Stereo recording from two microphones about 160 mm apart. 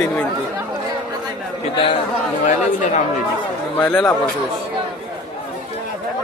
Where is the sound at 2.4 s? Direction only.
50° left (ahead or behind).